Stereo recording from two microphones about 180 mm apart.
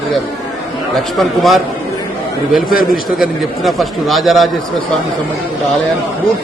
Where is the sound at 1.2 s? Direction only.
Centre (ahead or behind).